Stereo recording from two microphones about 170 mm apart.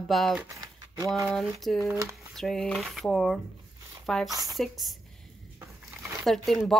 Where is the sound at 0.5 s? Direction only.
20° right (ahead or behind).